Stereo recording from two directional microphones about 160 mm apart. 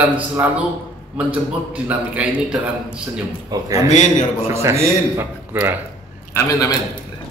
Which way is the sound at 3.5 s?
25° right (ahead or behind).